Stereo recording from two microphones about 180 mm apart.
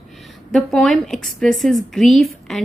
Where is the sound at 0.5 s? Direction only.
Centre (ahead or behind).